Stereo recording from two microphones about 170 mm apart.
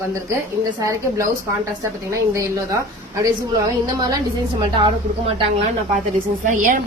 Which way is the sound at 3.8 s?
20° right (ahead or behind).